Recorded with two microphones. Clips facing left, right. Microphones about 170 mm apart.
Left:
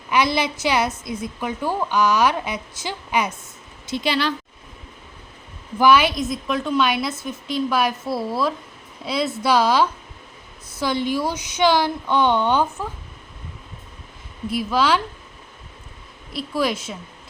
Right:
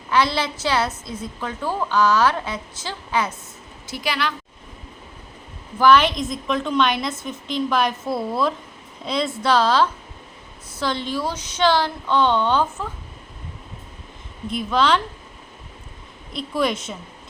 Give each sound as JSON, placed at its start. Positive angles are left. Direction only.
{"t": 0.1, "sound": "a woman's voice", "side_deg": 15}
{"t": 5.8, "sound": "a woman's voice", "side_deg": 10}
{"t": 14.5, "sound": "a woman's voice", "side_deg": 5}
{"t": 16.3, "sound": "a woman's voice", "side_deg": 5}